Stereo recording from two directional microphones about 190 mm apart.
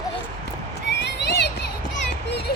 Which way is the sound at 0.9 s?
65° left (ahead or behind).